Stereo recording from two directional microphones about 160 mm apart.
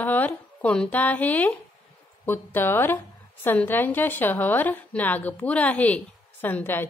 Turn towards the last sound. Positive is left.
turn(degrees=15)  # may be behind; listen again after turning